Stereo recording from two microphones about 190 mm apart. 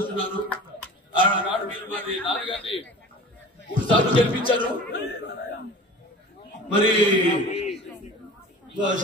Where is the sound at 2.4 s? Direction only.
30° left (ahead or behind).